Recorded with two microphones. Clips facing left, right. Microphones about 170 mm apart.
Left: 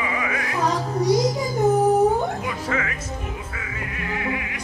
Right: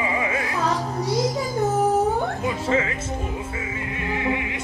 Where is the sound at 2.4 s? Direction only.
25° right (ahead or behind).